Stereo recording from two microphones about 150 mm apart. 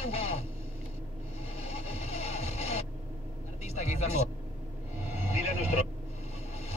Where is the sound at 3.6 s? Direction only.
45° left (ahead or behind).